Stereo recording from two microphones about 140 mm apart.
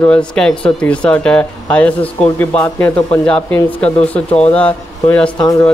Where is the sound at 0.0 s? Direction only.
5° left (ahead or behind).